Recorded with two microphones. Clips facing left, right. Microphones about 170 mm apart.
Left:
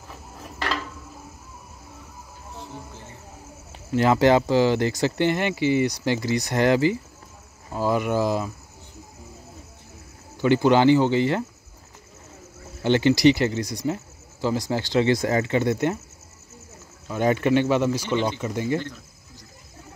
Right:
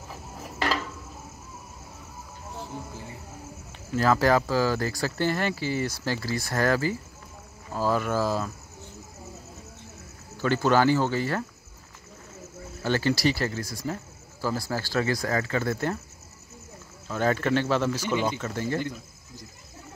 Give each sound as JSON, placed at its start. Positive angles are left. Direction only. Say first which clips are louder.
{"t": 3.9, "sound": "speech", "louder": "left 4 dB", "side_deg": 20}
{"t": 10.3, "sound": "speech", "louder": "left 4 dB", "side_deg": 15}
{"t": 12.8, "sound": "speech", "louder": "left 7 dB", "side_deg": 20}
{"t": 17.1, "sound": "speech", "louder": "left 4 dB", "side_deg": 15}
{"t": 18.0, "sound": "speech", "louder": "left 2 dB", "side_deg": -10}
{"t": 18.4, "sound": "speech", "louder": "left 4 dB", "side_deg": 15}